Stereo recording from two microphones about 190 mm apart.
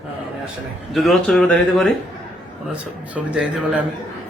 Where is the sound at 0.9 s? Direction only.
Centre (ahead or behind).